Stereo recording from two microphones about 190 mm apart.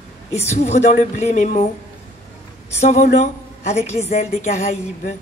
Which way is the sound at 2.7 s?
35° left (ahead or behind).